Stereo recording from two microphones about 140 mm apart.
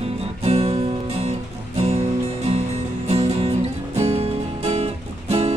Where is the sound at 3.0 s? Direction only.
50° right (ahead or behind).